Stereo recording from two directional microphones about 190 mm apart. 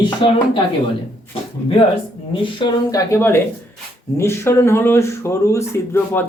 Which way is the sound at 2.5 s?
15° left (ahead or behind).